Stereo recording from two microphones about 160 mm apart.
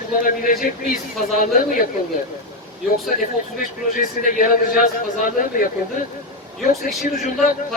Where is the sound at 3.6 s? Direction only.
60° left (ahead or behind).